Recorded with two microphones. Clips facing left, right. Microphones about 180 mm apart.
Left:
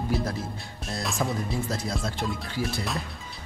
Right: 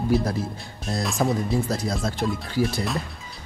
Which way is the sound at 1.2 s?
50° right (ahead or behind).